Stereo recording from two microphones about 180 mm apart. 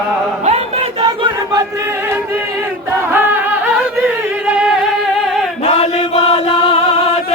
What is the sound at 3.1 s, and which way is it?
Music, 10° right (ahead or behind).